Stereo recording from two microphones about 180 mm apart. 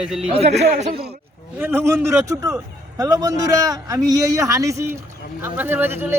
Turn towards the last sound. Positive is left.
turn(degrees=-10)  # may be behind; listen again after turning